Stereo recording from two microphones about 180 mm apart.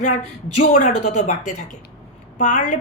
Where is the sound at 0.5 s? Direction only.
40° left (ahead or behind).